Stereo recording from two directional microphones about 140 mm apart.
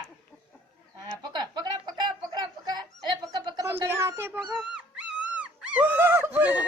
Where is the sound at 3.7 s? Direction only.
20° right (ahead or behind).